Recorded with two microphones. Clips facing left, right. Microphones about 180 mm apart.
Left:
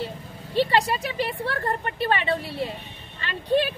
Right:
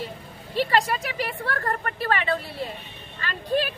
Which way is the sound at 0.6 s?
25° left (ahead or behind).